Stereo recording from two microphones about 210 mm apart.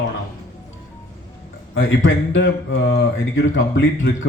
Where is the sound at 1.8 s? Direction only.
60° left (ahead or behind).